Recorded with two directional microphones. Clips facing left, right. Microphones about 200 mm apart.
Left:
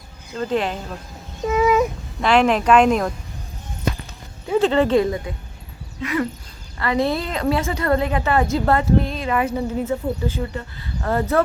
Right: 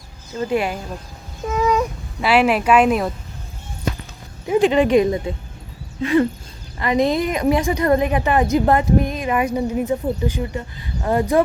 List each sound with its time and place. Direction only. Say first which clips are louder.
0.3 s a woman's voice: right 1 dB; 10° right (ahead or behind)
1.5 s speech: left 2 dB; 5° left (ahead or behind)
4.4 s a woman's voice: right 2 dB; 15° right (ahead or behind)
6.7 s a woman's voice: right 3 dB; 15° right (ahead or behind)